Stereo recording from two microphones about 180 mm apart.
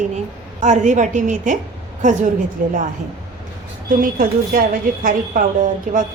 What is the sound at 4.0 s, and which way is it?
A woman's voice, 50° right (ahead or behind).